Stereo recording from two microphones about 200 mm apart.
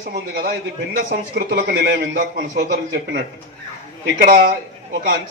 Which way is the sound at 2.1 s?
40° right (ahead or behind).